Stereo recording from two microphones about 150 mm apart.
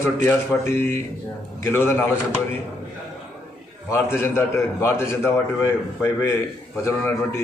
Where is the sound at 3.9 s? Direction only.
15° left (ahead or behind).